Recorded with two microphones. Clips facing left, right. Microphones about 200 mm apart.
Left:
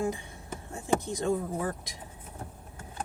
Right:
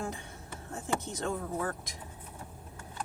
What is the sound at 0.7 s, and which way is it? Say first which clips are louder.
Speech: left 5 dB; 10° left (ahead or behind).